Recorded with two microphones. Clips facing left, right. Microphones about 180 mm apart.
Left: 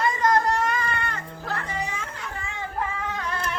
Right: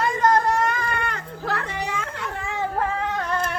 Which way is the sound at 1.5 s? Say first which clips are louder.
Right 3 dB; 80° right.